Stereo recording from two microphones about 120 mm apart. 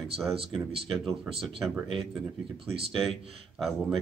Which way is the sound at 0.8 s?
Centre (ahead or behind).